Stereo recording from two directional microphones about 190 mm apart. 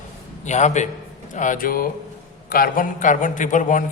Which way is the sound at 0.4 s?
40° left (ahead or behind).